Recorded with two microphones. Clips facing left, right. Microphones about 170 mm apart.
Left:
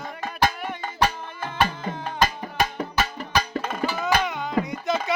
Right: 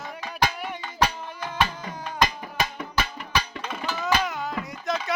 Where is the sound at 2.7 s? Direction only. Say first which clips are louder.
Left 3 dB; 40° left (ahead or behind).